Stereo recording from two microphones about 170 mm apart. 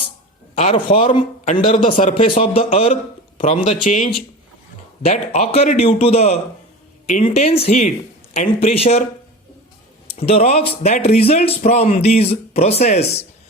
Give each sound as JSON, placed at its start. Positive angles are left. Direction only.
{"t": 0.5, "sound": "speech", "side_deg": 35}
{"t": 1.5, "sound": "a man's voice", "side_deg": 45}
{"t": 10.2, "sound": "speech", "side_deg": 40}